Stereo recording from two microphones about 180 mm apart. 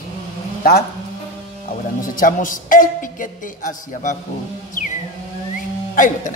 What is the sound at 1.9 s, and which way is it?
Speech, 50° left (ahead or behind).